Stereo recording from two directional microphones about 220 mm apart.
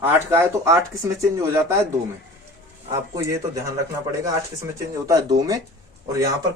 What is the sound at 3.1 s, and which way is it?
Speech, 15° right (ahead or behind).